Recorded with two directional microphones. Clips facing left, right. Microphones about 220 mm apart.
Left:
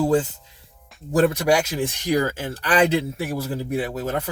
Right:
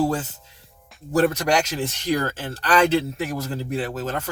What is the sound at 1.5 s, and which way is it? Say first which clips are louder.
Speech: left 2 dB; 10° left (ahead or behind).